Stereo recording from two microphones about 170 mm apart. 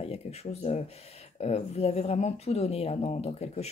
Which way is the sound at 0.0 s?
40° left (ahead or behind).